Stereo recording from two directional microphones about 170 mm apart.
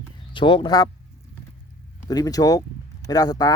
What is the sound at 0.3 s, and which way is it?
Speech, 30° left (ahead or behind).